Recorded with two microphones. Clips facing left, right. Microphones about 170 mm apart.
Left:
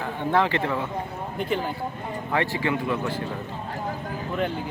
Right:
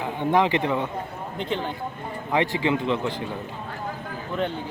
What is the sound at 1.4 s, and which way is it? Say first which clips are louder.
Speech: left 1 dB; 5° left (ahead or behind).